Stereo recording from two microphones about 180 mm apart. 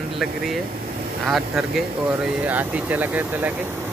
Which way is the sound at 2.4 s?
10° right (ahead or behind).